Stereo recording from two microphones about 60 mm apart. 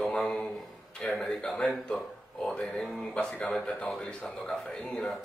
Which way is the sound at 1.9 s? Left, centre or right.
Left.